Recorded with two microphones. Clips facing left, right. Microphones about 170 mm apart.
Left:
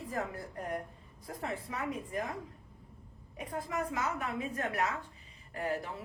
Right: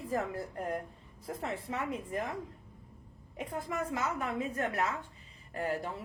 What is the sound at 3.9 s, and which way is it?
Speech, 25° right (ahead or behind).